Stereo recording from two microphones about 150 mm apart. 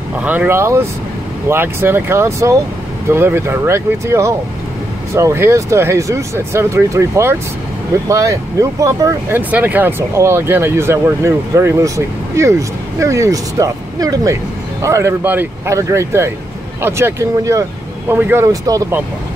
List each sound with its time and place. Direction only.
0.2 s speech: 10° right (ahead or behind)
9.5 s speech: 10° right (ahead or behind)